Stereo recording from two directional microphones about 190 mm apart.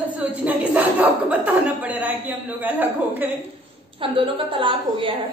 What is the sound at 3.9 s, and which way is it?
A woman's voice, 25° right (ahead or behind).